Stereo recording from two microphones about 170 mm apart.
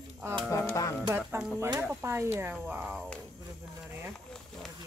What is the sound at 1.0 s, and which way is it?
Speech, 10° right (ahead or behind).